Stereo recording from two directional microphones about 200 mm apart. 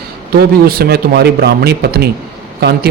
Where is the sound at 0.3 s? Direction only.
50° right (ahead or behind).